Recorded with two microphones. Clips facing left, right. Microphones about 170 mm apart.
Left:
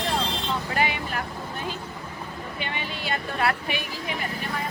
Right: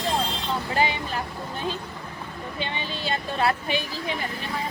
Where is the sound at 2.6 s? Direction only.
25° right (ahead or behind).